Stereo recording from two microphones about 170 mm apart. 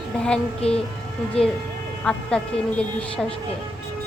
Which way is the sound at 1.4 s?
35° left (ahead or behind).